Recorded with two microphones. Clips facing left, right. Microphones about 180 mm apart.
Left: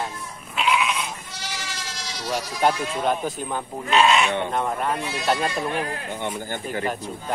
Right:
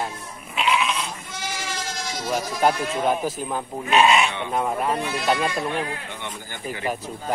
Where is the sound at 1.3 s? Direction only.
50° right (ahead or behind).